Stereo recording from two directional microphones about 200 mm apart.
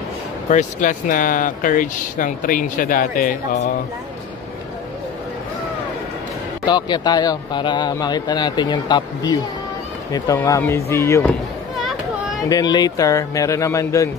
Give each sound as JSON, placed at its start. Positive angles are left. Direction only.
{"t": 0.5, "sound": "speech", "side_deg": 40}
{"t": 6.6, "sound": "a man's voice", "side_deg": 20}
{"t": 12.4, "sound": "speech", "side_deg": 20}